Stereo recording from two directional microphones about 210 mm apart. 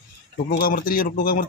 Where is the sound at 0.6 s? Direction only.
45° left (ahead or behind).